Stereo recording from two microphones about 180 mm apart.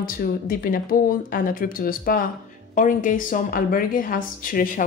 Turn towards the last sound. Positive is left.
turn(degrees=50)  # may be behind; listen again after turning